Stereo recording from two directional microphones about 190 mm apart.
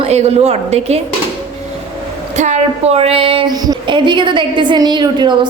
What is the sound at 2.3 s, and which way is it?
A woman's voice, 40° right (ahead or behind).